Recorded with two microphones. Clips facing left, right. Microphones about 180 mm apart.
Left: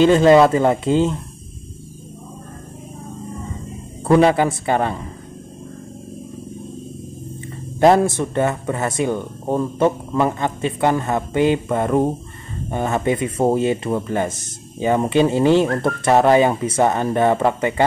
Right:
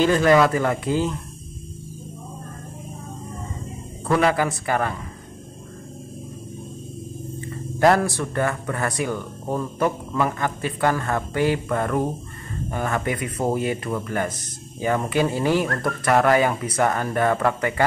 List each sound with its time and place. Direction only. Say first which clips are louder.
0.0 s speech: left 5 dB; 25° left (ahead or behind)
4.1 s speech: left 6 dB; 25° left (ahead or behind)
7.8 s speech: left 4 dB; 20° left (ahead or behind)